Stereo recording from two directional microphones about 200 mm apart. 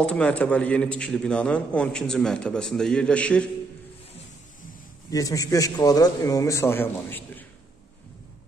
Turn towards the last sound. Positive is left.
turn(degrees=10)  # may be behind; listen again after turning